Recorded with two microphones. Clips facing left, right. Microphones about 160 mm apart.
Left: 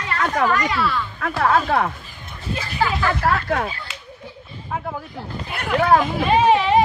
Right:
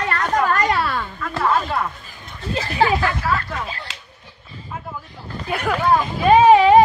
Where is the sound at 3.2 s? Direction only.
60° left (ahead or behind).